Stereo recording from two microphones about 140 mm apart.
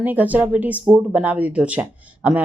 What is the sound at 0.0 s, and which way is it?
Speech, 10° right (ahead or behind).